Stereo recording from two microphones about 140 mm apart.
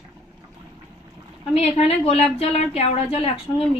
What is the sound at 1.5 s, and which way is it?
A woman's voice, 45° left (ahead or behind).